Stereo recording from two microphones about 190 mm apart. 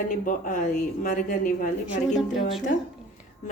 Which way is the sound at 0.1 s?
45° left (ahead or behind).